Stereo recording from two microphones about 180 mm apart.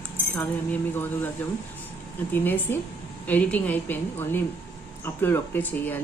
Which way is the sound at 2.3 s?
10° left (ahead or behind).